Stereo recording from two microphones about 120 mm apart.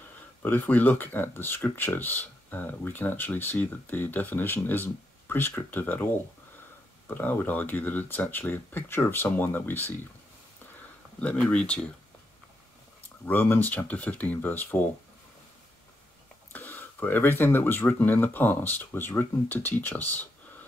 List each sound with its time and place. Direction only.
0.4 s speech: 15° left (ahead or behind)
7.1 s speech: 15° left (ahead or behind)
11.1 s speech: 10° left (ahead or behind)
13.2 s speech: 15° left (ahead or behind)
16.5 s speech: 15° left (ahead or behind)